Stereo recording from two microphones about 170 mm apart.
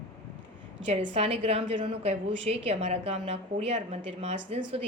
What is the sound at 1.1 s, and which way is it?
Speech, 35° right (ahead or behind).